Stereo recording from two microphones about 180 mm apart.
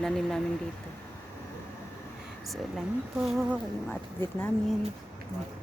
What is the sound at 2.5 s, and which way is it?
Speech, centre (ahead or behind).